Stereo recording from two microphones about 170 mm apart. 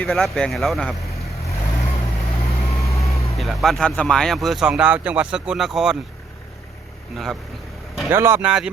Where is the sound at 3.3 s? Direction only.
Centre (ahead or behind).